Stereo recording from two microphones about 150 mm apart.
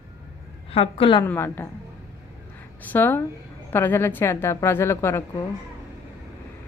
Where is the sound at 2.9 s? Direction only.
15° left (ahead or behind).